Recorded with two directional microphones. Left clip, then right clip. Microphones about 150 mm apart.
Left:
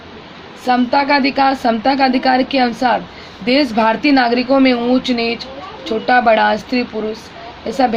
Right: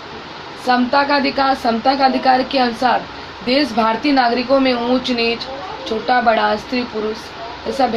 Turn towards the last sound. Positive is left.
turn(degrees=60)  # may be behind; listen again after turning